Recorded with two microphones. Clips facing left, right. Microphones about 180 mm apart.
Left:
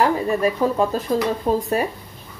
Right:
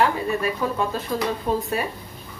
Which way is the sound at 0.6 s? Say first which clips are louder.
Left 5 dB; 35° left (ahead or behind).